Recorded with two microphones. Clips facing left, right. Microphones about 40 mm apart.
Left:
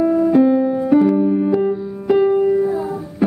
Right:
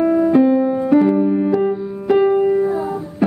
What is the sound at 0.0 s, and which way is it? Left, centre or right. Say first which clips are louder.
Music: right 1 dB; right.